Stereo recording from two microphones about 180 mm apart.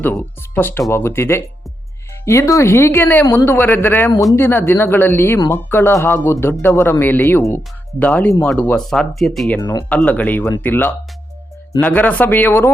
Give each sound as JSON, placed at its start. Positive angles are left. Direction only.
{"t": 0.0, "sound": "a man's voice", "side_deg": 10}
{"t": 9.6, "sound": "speech", "side_deg": 20}
{"t": 9.9, "sound": "a man's voice", "side_deg": 10}